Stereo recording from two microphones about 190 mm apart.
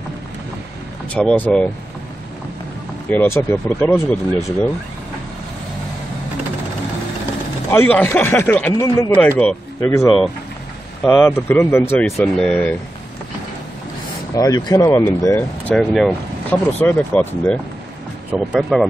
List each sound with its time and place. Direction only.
1.1 s speech: 5° left (ahead or behind)
3.1 s speech: 10° left (ahead or behind)
7.7 s speech: 10° left (ahead or behind)
11.1 s speech: 10° left (ahead or behind)
14.3 s speech: 20° left (ahead or behind); by 18.9 s centre (ahead or behind)